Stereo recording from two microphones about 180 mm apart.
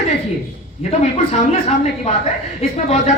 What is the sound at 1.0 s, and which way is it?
Speech, 35° left (ahead or behind).